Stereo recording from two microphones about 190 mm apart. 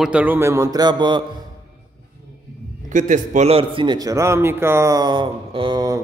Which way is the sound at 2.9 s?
40° right (ahead or behind).